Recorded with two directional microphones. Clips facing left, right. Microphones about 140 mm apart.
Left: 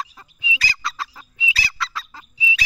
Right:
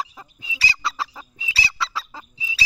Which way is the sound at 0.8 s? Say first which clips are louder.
Right 2 dB; 25° right (ahead or behind).